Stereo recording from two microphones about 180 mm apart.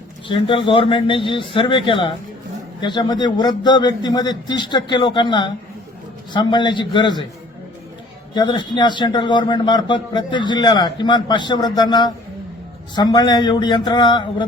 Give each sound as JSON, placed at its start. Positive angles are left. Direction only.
{"t": 0.3, "sound": "a man's voice", "side_deg": 30}
{"t": 8.3, "sound": "a man's voice", "side_deg": 25}